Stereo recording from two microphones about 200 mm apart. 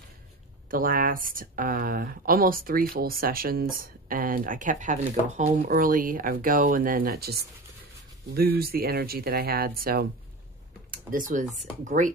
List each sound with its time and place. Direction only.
0.7 s speech: 45° right (ahead or behind)